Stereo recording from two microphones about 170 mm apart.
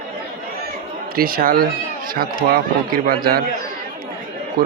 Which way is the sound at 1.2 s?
60° right (ahead or behind).